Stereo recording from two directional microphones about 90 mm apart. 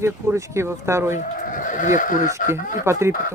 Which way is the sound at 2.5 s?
30° right (ahead or behind).